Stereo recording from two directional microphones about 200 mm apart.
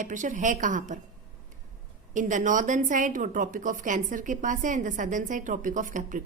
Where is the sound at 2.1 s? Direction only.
40° right (ahead or behind).